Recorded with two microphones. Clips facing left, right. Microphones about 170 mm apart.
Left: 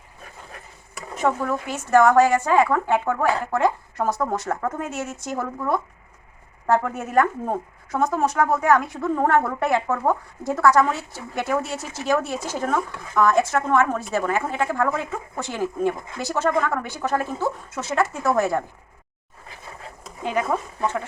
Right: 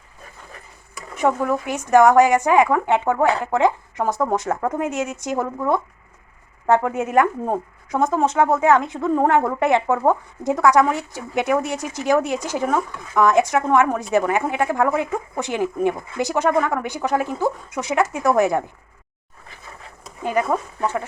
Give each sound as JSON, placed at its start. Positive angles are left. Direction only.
{"t": 1.2, "sound": "speech", "side_deg": -15}
{"t": 20.3, "sound": "speech", "side_deg": -5}